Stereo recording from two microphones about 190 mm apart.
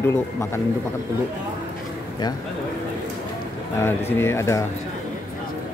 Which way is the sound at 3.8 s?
10° left (ahead or behind).